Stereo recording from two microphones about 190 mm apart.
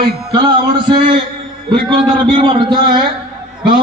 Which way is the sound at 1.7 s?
25° right (ahead or behind).